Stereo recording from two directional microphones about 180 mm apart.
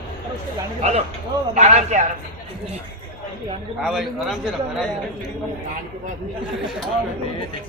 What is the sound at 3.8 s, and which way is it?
A man's voice, centre (ahead or behind).